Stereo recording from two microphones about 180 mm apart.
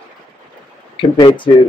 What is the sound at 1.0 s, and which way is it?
Speech, 30° left (ahead or behind).